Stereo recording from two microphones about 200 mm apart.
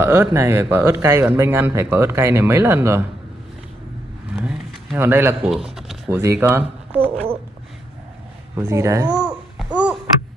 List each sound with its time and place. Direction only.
0.0 s speech: 10° right (ahead or behind)
4.4 s a sound: 5° right (ahead or behind)
6.0 s speech: 10° right (ahead or behind)
8.5 s speech: 15° right (ahead or behind)
9.1 s babbling: 5° right (ahead or behind)